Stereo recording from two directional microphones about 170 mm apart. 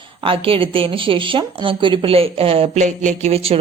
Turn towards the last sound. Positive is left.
turn(degrees=-35)  # may be behind; listen again after turning